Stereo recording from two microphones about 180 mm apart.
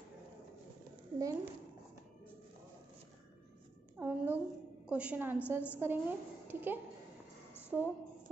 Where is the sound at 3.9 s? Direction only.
15° right (ahead or behind).